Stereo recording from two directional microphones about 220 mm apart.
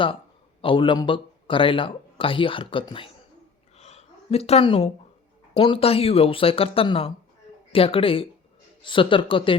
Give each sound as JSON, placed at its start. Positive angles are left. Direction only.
{"t": 0.6, "sound": "speech", "side_deg": 25}
{"t": 3.8, "sound": "a sound", "side_deg": 30}
{"t": 5.5, "sound": "speech", "side_deg": 25}